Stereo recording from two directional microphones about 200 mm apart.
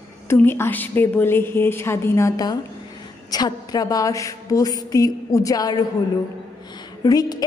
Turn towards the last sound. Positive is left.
turn(degrees=20)  # may be behind; listen again after turning